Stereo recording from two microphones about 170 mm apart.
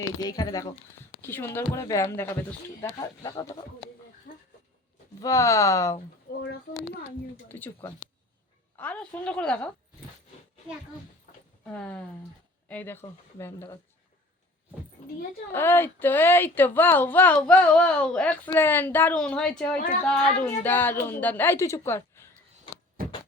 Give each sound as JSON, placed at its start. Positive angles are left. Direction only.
{"t": 0.2, "sound": "speech", "side_deg": 25}
{"t": 4.3, "sound": "a sound", "side_deg": 55}
{"t": 5.2, "sound": "speech", "side_deg": 20}
{"t": 6.3, "sound": "speech", "side_deg": 60}
{"t": 7.4, "sound": "speech", "side_deg": 10}
{"t": 11.3, "sound": "a sound", "side_deg": 45}
{"t": 11.6, "sound": "speech", "side_deg": 5}
{"t": 15.5, "sound": "speech", "side_deg": 10}